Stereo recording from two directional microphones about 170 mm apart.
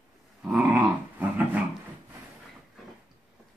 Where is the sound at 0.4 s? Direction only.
5° right (ahead or behind).